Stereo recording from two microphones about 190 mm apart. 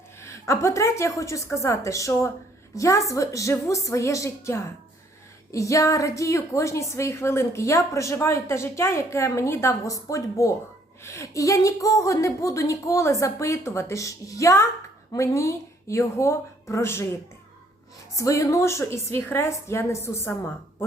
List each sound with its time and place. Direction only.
0.2 s a woman's voice: 15° left (ahead or behind)
18.2 s a woman's voice: 15° left (ahead or behind)